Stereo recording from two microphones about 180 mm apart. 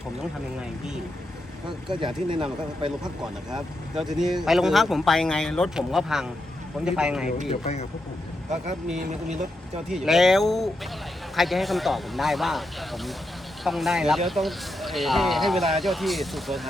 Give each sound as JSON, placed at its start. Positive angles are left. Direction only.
{"t": 1.9, "sound": "speech", "side_deg": -25}
{"t": 3.9, "sound": "speech", "side_deg": 0}
{"t": 7.5, "sound": "speech", "side_deg": 35}
{"t": 9.0, "sound": "speech", "side_deg": -40}
{"t": 9.9, "sound": "speech", "side_deg": 0}